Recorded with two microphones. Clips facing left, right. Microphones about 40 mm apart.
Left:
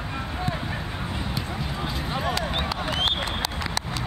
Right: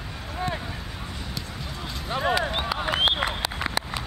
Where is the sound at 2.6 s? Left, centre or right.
Centre.